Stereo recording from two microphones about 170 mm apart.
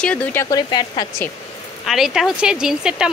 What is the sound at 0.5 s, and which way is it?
Speech, 25° left (ahead or behind).